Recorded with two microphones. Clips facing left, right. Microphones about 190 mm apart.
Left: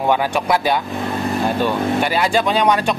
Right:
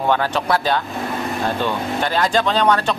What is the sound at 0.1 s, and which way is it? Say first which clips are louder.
Speech: left 1 dB; 10° left (ahead or behind).